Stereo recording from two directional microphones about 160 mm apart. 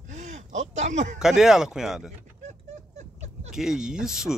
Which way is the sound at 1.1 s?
5° right (ahead or behind).